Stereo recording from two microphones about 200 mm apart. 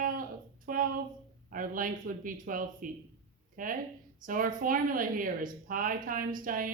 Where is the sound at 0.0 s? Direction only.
45° right (ahead or behind).